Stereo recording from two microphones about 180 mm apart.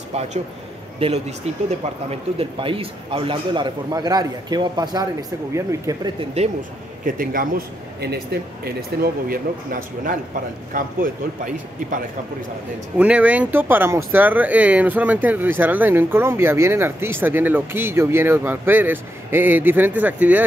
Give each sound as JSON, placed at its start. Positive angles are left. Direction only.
{"t": 0.9, "sound": "a man's voice", "side_deg": -35}
{"t": 7.2, "sound": "a man's voice", "side_deg": -55}
{"t": 12.9, "sound": "speech", "side_deg": -5}